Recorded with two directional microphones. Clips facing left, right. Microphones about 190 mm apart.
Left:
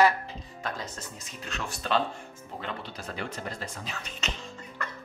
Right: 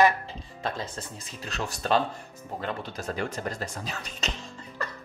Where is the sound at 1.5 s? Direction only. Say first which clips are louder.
Right 3 dB; 40° right (ahead or behind).